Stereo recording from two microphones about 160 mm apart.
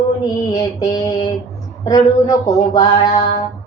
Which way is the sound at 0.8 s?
25° left (ahead or behind).